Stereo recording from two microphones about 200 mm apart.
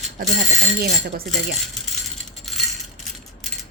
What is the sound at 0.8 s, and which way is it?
Speech, 50° right (ahead or behind).